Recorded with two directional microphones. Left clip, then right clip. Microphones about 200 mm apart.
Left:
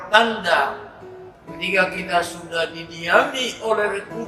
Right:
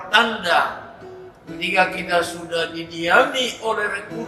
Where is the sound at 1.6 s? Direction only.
5° right (ahead or behind).